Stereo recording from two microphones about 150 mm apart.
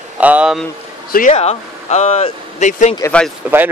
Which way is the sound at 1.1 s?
65° left (ahead or behind).